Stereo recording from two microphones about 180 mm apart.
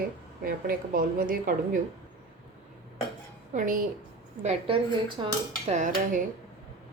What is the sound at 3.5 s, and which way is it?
Speech, 45° right (ahead or behind).